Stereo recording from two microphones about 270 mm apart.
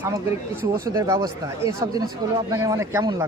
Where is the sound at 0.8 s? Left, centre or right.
Centre.